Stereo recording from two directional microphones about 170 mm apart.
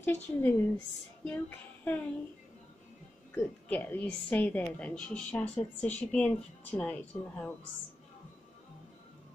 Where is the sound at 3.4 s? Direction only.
10° left (ahead or behind).